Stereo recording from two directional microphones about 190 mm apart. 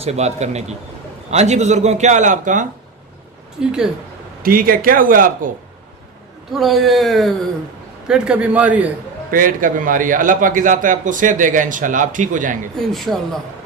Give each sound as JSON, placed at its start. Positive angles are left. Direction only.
{"t": 0.0, "sound": "a man's voice", "side_deg": -35}
{"t": 3.6, "sound": "speech", "side_deg": -5}
{"t": 4.4, "sound": "a man's voice", "side_deg": -50}
{"t": 6.5, "sound": "a man's voice", "side_deg": 0}
{"t": 9.3, "sound": "a man's voice", "side_deg": -45}
{"t": 12.9, "sound": "speech", "side_deg": 0}